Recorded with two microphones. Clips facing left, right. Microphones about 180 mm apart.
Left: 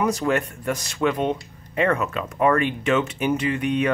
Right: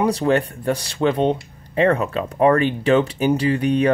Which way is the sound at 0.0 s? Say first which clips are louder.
Right 4 dB; 30° right (ahead or behind).